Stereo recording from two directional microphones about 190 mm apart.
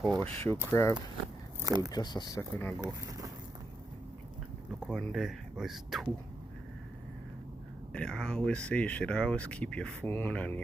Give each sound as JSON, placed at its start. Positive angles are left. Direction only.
{"t": 0.1, "sound": "speech", "side_deg": -25}
{"t": 0.7, "sound": "speech", "side_deg": 15}
{"t": 1.6, "sound": "speech", "side_deg": -20}
{"t": 1.9, "sound": "speech", "side_deg": 20}
{"t": 2.8, "sound": "speech", "side_deg": -20}
{"t": 4.9, "sound": "speech", "side_deg": 0}
{"t": 7.9, "sound": "speech", "side_deg": 5}